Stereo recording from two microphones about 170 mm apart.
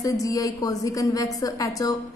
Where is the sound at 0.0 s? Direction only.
20° left (ahead or behind).